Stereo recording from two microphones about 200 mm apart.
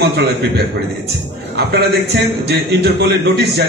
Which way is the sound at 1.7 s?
55° right (ahead or behind).